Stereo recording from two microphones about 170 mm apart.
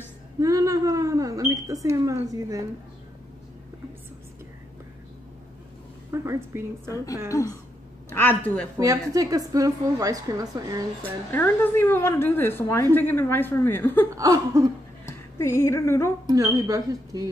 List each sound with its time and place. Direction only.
0.4 s smoke detector: 20° right (ahead or behind)
6.1 s a woman's voice: 15° right (ahead or behind)
7.2 s speech: 20° left (ahead or behind)
8.7 s a woman's voice: 20° right (ahead or behind)
11.0 s speech: 10° left (ahead or behind)
14.1 s a woman's voice: 20° right (ahead or behind)
15.3 s speech: 15° left (ahead or behind)
16.3 s a woman's voice: 20° right (ahead or behind)